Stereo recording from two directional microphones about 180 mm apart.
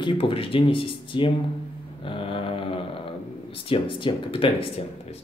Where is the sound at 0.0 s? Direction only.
30° left (ahead or behind).